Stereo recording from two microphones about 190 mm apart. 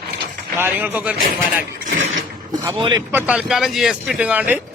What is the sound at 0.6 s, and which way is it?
Speech, 10° right (ahead or behind).